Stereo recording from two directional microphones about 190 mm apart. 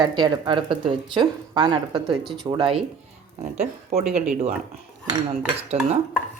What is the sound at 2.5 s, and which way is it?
Speech, 25° right (ahead or behind).